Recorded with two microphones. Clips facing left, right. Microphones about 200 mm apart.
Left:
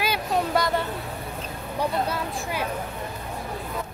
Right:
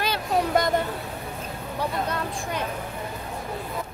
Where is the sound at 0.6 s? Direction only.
20° right (ahead or behind).